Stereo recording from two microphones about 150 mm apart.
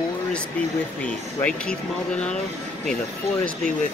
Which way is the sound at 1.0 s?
10° left (ahead or behind).